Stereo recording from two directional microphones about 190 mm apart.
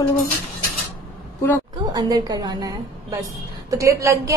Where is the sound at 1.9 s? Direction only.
20° right (ahead or behind).